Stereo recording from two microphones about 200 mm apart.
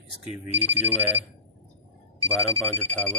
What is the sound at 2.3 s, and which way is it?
Speech, 10° left (ahead or behind).